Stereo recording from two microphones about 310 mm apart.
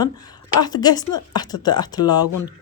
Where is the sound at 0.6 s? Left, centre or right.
Centre.